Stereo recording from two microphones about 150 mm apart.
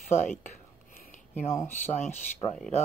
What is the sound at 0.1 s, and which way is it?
Speech, 55° left (ahead or behind).